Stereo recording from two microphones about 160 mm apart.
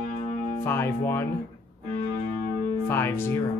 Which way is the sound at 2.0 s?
35° right (ahead or behind).